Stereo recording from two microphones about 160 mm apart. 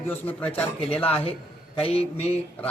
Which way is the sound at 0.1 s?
10° left (ahead or behind).